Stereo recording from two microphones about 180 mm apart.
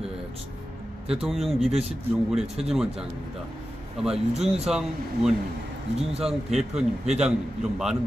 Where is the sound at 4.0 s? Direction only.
Centre (ahead or behind).